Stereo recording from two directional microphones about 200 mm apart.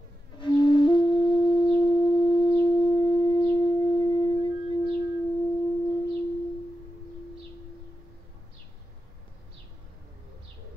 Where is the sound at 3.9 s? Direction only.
25° left (ahead or behind).